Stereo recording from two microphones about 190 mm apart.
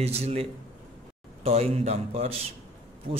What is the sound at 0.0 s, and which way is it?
A man's voice, 35° right (ahead or behind).